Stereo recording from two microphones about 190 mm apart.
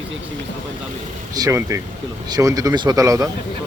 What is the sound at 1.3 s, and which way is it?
Speech, 15° right (ahead or behind).